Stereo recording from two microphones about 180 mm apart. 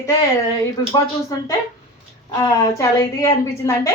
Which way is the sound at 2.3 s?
20° left (ahead or behind).